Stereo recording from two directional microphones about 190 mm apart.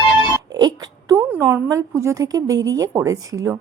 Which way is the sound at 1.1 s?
10° right (ahead or behind).